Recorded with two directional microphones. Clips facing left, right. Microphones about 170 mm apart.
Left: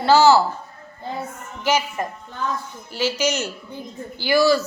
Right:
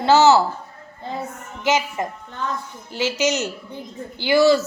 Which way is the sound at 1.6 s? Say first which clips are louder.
Right 1 dB; 20° right (ahead or behind).